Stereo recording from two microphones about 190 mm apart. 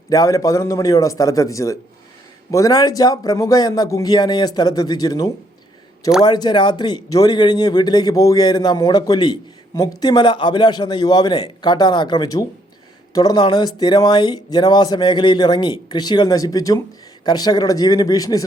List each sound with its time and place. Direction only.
0.1 s a man's voice: 20° left (ahead or behind)